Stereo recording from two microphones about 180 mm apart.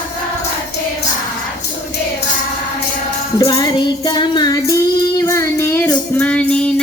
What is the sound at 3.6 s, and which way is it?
Child singing, 25° left (ahead or behind).